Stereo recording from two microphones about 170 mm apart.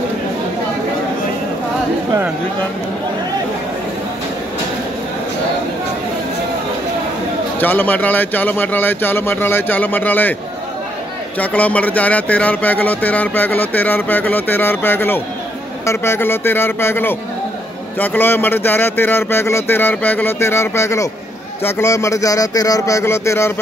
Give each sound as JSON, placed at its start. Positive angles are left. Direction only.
{"t": 7.6, "sound": "speech", "side_deg": 10}
{"t": 11.3, "sound": "speech", "side_deg": 10}